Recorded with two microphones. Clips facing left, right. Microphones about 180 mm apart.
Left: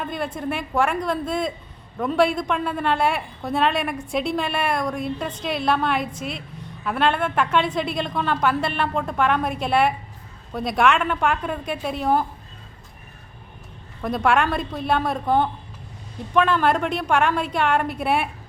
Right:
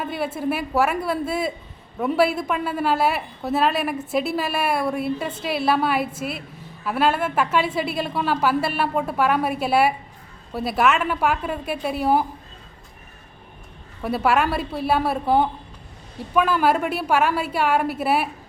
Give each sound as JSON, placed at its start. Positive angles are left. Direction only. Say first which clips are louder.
{"t": 0.0, "sound": "a woman's voice", "louder": "right 2 dB", "side_deg": -5}
{"t": 14.0, "sound": "a woman's voice", "louder": "even", "side_deg": -5}